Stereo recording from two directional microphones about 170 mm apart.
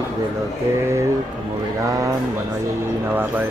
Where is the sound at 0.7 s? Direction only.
15° right (ahead or behind).